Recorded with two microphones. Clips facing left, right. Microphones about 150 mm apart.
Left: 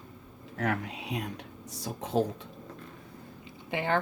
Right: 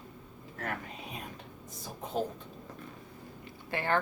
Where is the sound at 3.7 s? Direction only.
15° left (ahead or behind).